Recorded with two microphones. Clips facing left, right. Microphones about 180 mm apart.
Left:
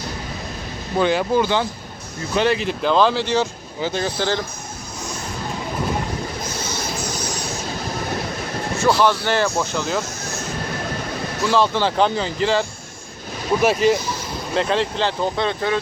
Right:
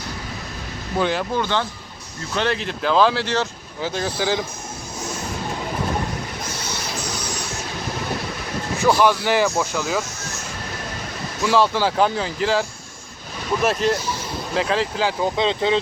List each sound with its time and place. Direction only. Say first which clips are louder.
0.9 s speech: left 4 dB; centre (ahead or behind)
8.8 s speech: even; 10° right (ahead or behind)
11.4 s speech: even; 10° right (ahead or behind)
15.4 s speech: right 4 dB; 20° right (ahead or behind)